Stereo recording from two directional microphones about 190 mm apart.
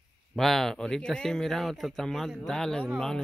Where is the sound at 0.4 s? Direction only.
Centre (ahead or behind).